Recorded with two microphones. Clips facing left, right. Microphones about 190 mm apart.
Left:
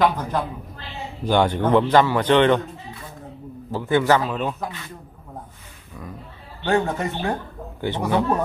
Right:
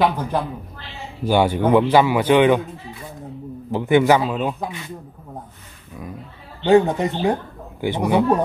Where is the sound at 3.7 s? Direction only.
20° right (ahead or behind).